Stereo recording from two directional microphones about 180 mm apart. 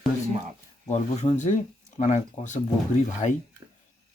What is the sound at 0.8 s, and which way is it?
Speech, 40° left (ahead or behind).